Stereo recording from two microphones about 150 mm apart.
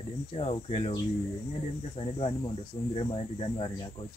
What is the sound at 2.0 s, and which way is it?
Speech, 40° left (ahead or behind).